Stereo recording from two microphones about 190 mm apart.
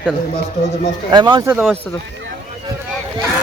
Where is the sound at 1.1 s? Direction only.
25° right (ahead or behind).